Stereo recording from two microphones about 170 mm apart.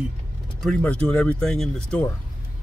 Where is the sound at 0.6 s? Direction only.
5° left (ahead or behind).